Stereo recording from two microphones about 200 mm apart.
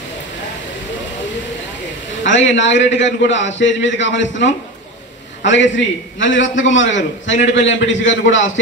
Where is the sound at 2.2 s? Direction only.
65° left (ahead or behind).